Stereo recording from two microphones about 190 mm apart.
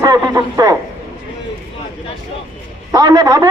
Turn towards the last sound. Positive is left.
turn(degrees=-20)  # may be behind; listen again after turning